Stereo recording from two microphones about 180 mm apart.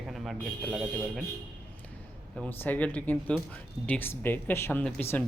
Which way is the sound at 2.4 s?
10° left (ahead or behind).